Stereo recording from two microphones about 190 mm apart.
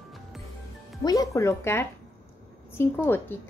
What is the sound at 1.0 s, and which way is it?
Speech, 20° left (ahead or behind).